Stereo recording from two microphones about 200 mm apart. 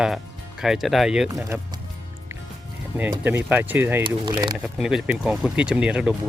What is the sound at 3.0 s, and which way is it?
Speech, 10° right (ahead or behind).